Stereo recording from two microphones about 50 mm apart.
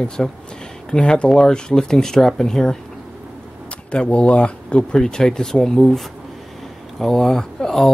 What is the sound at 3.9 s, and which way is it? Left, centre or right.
Speech, left.